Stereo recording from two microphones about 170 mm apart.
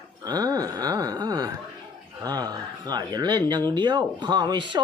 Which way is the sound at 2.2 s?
20° right (ahead or behind).